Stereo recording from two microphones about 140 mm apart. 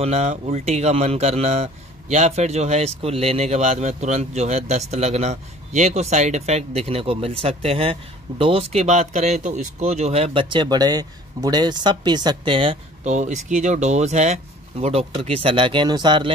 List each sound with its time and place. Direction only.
0.0 s speech: 50° right (ahead or behind)
13.0 s speech: 55° right (ahead or behind); by 16.3 s 35° right (ahead or behind)